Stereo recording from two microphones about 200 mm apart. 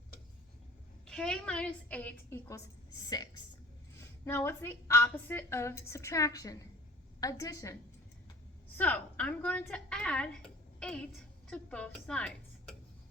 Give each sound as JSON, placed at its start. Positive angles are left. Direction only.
{"t": 1.0, "sound": "a woman's voice", "side_deg": 5}
{"t": 3.1, "sound": "a woman's voice", "side_deg": 20}